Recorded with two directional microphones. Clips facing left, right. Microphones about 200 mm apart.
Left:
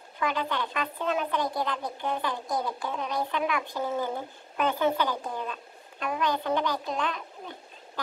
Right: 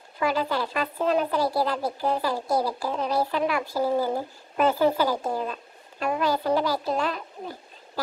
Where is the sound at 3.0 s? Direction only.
35° right (ahead or behind).